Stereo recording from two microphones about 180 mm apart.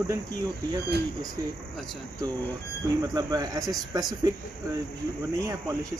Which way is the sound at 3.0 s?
20° right (ahead or behind).